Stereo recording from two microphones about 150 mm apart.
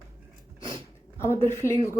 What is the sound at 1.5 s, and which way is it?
Speech, 20° left (ahead or behind).